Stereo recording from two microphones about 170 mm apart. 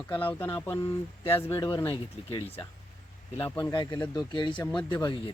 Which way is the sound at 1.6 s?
25° left (ahead or behind).